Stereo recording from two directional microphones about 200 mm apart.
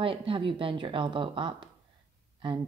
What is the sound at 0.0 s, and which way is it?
Speech, 25° right (ahead or behind).